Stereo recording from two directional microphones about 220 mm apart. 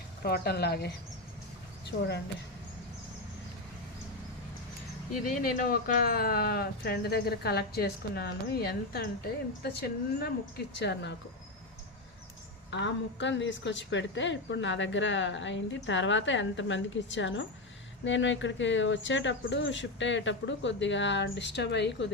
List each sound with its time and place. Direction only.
0.2 s speech: 45° left (ahead or behind)
5.2 s speech: 40° left (ahead or behind)
10.8 s speech: 50° left (ahead or behind)
12.7 s a woman's voice: 55° left (ahead or behind)